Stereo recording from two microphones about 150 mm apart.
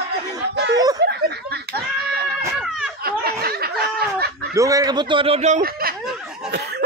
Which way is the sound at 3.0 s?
90° right.